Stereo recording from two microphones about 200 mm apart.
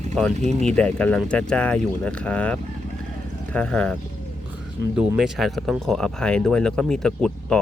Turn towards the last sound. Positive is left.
turn(degrees=5)  # may be behind; listen again after turning